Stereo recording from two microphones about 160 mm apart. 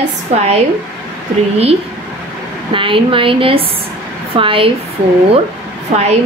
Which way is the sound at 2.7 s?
35° right (ahead or behind).